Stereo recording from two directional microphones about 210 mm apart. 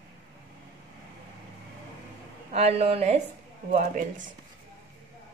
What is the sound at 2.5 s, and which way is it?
Speech, 30° right (ahead or behind).